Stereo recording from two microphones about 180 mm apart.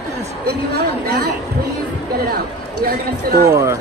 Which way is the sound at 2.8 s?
65° right (ahead or behind).